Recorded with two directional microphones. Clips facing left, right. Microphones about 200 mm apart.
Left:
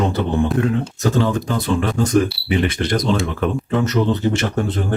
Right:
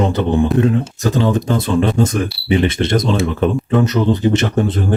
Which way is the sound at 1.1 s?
20° right (ahead or behind).